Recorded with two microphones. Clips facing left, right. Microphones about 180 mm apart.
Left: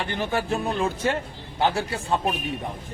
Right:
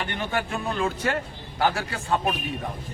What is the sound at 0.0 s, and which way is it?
A man's voice, 30° left (ahead or behind).